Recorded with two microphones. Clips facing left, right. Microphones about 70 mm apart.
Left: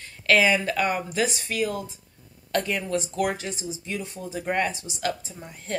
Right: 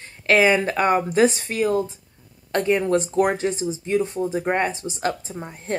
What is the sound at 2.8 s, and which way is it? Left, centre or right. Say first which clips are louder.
Speech: right 7 dB; right.